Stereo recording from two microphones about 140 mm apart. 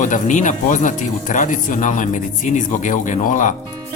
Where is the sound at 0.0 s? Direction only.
65° left (ahead or behind).